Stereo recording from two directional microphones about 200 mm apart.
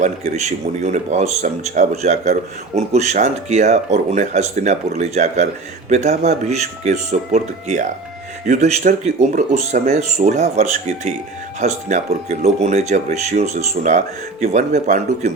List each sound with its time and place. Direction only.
0.0 s speech: 35° right (ahead or behind)